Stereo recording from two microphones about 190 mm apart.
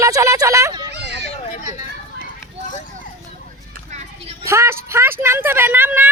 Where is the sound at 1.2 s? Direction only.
35° left (ahead or behind).